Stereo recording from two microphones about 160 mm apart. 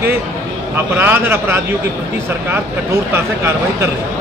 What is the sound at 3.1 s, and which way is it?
Speech, 15° right (ahead or behind).